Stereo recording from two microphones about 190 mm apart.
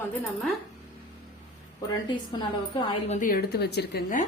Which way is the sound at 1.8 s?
20° left (ahead or behind).